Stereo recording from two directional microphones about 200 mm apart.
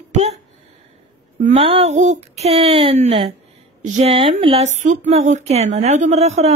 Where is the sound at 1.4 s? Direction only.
30° right (ahead or behind).